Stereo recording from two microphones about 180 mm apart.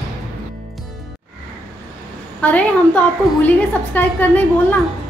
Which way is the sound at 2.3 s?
10° left (ahead or behind).